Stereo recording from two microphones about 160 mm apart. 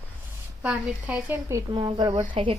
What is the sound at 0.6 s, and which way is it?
A woman's voice, 10° right (ahead or behind).